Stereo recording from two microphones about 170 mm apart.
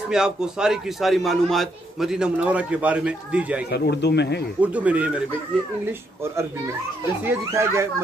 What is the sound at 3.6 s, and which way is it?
Speech, 75° left (ahead or behind).